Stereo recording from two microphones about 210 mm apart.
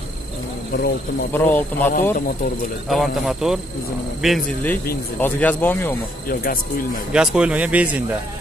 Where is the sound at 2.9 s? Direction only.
Centre (ahead or behind).